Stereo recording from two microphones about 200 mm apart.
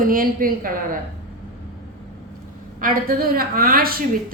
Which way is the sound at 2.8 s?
45° right (ahead or behind).